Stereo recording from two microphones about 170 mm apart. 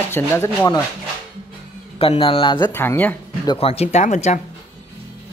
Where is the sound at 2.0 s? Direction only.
35° left (ahead or behind).